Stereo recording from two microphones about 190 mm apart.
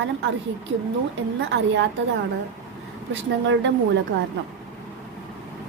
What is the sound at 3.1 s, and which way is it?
Speech, 75° right (ahead or behind).